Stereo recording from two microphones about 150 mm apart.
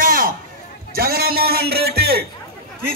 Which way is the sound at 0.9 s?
80° right.